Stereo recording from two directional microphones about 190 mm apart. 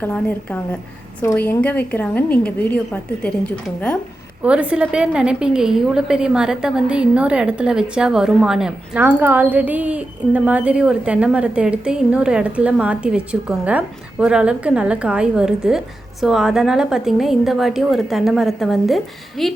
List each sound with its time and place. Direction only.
0.0 s a woman's voice: 10° left (ahead or behind)
4.4 s a woman's voice: 5° right (ahead or behind)